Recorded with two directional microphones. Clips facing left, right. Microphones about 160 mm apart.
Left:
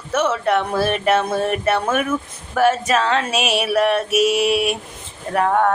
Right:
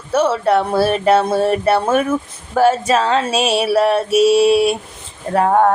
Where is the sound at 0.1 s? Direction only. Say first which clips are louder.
Right 4 dB; 30° right (ahead or behind).